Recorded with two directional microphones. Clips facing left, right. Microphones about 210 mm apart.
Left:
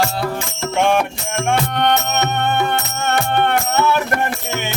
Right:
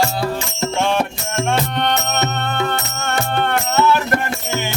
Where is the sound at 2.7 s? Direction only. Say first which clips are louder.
Left 3 dB; 20° left (ahead or behind).